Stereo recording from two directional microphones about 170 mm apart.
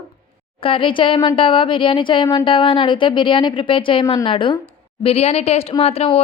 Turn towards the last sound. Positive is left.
turn(degrees=35)  # may be behind; listen again after turning